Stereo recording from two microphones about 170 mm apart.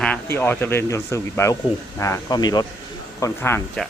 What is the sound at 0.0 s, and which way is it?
Speech, 10° left (ahead or behind).